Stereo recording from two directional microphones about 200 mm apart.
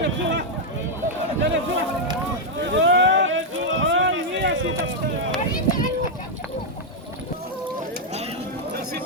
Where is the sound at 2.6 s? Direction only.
65° right (ahead or behind).